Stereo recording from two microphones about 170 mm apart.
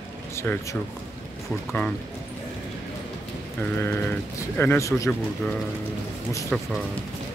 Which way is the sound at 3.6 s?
15° left (ahead or behind).